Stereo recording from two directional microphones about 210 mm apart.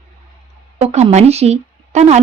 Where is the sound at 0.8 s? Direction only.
30° right (ahead or behind).